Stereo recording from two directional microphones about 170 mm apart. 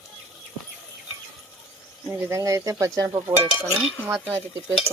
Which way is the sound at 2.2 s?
15° right (ahead or behind).